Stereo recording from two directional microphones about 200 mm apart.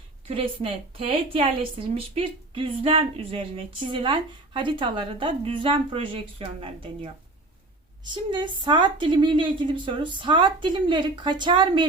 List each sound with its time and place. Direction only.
0.3 s a woman's voice: 30° right (ahead or behind)
8.1 s a woman's voice: 20° right (ahead or behind)